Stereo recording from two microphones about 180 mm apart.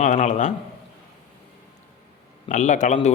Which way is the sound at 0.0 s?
40° left (ahead or behind).